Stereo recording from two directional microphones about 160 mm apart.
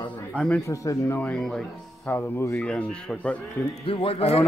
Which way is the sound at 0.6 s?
20° left (ahead or behind).